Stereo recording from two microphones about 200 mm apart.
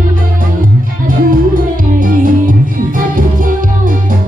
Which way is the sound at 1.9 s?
45° right (ahead or behind).